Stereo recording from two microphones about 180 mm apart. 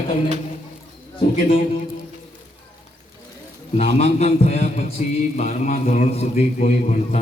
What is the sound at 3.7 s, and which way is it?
A man's voice, 35° left (ahead or behind).